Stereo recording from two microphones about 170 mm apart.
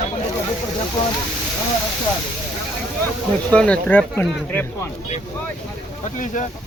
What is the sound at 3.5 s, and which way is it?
A man's voice, 5° left (ahead or behind).